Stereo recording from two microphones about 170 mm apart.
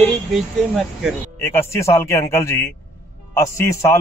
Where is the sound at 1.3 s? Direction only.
15° left (ahead or behind).